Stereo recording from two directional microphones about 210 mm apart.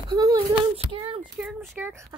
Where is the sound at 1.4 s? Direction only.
Centre (ahead or behind).